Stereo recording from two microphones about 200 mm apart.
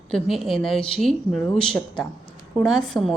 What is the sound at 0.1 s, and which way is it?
Speech, centre (ahead or behind).